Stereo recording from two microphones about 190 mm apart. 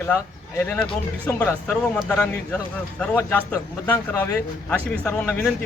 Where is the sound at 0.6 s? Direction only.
10° left (ahead or behind).